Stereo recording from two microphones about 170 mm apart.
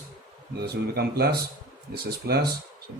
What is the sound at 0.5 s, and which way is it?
Speech, 65° right (ahead or behind).